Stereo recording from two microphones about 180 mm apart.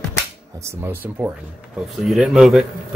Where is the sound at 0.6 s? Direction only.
15° right (ahead or behind).